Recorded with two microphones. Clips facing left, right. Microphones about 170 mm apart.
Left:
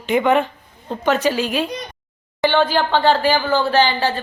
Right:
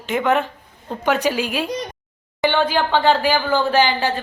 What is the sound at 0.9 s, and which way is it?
Speech, 10° right (ahead or behind).